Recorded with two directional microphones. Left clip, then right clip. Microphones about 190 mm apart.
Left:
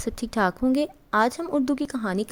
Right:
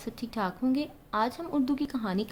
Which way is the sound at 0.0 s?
45° left (ahead or behind).